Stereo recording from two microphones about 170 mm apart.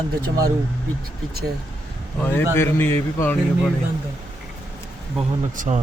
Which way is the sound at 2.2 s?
15° left (ahead or behind).